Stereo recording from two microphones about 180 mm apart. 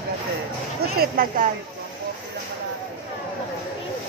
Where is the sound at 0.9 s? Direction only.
50° right (ahead or behind).